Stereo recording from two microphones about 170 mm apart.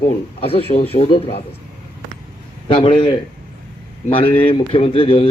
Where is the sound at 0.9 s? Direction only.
35° left (ahead or behind).